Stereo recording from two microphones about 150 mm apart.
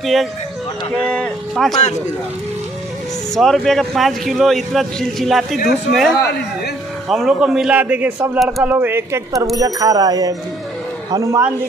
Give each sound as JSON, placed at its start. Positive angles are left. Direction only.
{"t": 0.0, "sound": "a man's voice", "side_deg": 0}
{"t": 3.3, "sound": "a man's voice", "side_deg": 0}